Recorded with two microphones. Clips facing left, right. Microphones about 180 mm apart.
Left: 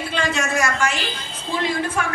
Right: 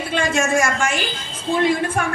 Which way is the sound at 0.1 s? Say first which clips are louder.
Right 5 dB; 50° right (ahead or behind).